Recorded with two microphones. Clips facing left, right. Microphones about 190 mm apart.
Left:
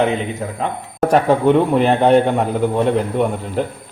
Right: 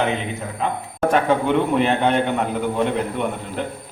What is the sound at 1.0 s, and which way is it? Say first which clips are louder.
A man's voice: left 5 dB; 35° left (ahead or behind).